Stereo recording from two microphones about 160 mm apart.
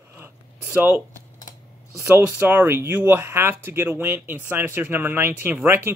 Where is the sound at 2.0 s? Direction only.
15° right (ahead or behind).